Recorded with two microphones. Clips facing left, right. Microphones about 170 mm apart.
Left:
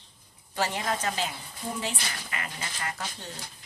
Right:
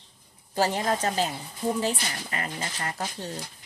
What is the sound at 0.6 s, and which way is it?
Speech, 35° right (ahead or behind).